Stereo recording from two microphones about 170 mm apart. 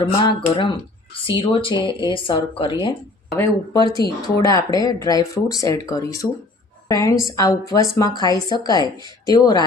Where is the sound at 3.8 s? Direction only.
25° left (ahead or behind).